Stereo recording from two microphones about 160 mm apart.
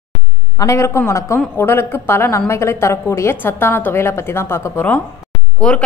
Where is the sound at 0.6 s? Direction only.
20° left (ahead or behind).